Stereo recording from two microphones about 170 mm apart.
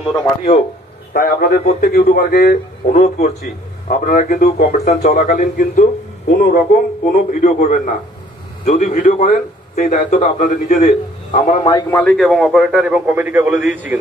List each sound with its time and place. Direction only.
1.1 s speech: 60° left (ahead or behind)
1.6 s a man's voice: 45° left (ahead or behind)
1.9 s speech: 65° left (ahead or behind)
2.9 s a man's voice: 45° left (ahead or behind)
6.4 s a man's voice: 60° left (ahead or behind); by 11.5 s 45° left (ahead or behind)
11.6 s a man's voice: 20° left (ahead or behind)
12.0 s a man's voice: centre (ahead or behind)